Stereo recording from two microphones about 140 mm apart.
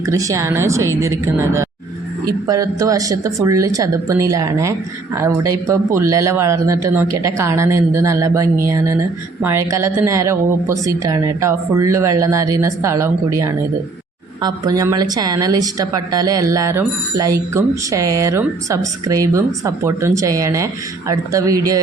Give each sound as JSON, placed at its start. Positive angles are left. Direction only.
{"t": 0.0, "sound": "speech", "side_deg": -20}